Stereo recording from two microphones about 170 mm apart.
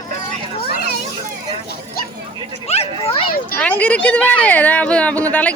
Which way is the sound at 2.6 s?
35° left (ahead or behind).